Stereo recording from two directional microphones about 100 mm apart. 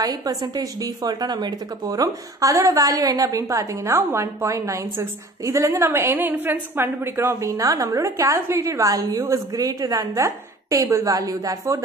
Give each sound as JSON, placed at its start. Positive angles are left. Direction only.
{"t": 0.0, "sound": "a woman's voice", "side_deg": -40}